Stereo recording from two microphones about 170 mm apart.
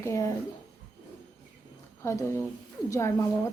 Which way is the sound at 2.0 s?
15° left (ahead or behind).